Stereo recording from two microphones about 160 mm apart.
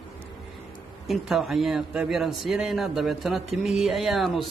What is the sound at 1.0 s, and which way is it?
A man's voice, centre (ahead or behind).